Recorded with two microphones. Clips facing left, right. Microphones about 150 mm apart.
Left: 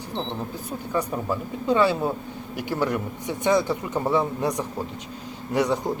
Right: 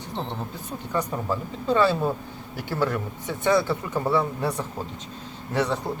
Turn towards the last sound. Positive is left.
turn(degrees=15)  # may be behind; listen again after turning